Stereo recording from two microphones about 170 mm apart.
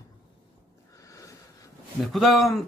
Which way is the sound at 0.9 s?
20° left (ahead or behind).